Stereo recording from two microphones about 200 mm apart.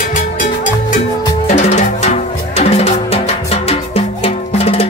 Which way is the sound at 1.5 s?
35° left (ahead or behind).